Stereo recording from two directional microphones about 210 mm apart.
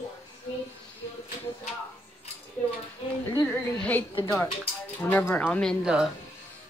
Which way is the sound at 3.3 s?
15° left (ahead or behind).